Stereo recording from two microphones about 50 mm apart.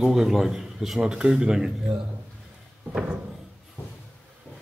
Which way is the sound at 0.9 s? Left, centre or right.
Centre.